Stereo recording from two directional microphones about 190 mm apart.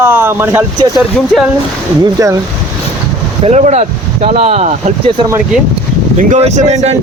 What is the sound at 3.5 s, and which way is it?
Speech, 35° right (ahead or behind).